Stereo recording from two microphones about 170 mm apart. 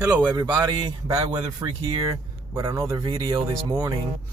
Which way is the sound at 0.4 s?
25° right (ahead or behind).